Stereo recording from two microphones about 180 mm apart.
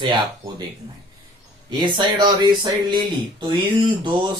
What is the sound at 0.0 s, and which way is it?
Speech, 25° right (ahead or behind).